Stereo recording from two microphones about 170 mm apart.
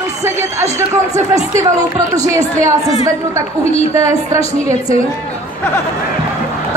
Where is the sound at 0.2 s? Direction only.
15° right (ahead or behind).